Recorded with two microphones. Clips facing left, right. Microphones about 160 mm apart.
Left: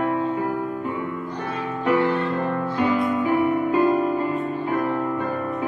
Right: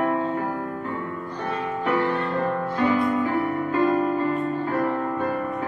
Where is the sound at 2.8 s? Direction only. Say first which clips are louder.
Even; 15° left (ahead or behind).